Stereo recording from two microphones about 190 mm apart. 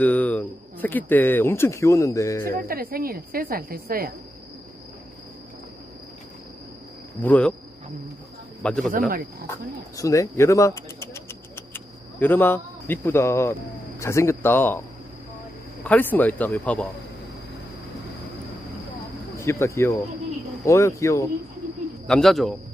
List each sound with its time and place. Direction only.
0.0 s speech: 10° left (ahead or behind)
2.6 s speech: 50° right (ahead or behind)
7.2 s speech: 10° left (ahead or behind)
8.6 s speech: 5° left (ahead or behind)
8.9 s speech: 45° right (ahead or behind)
10.0 s bird: 15° left (ahead or behind)
12.2 s speech: 10° left (ahead or behind)
19.4 s speech: 15° left (ahead or behind)
22.0 s speech: centre (ahead or behind)